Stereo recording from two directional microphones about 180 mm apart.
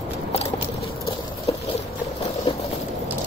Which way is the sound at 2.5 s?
30° left (ahead or behind).